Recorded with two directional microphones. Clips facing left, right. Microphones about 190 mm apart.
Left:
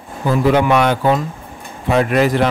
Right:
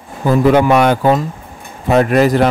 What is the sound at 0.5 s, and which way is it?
A man's voice, 45° right (ahead or behind).